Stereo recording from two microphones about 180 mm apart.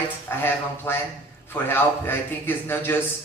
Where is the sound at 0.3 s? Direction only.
10° left (ahead or behind).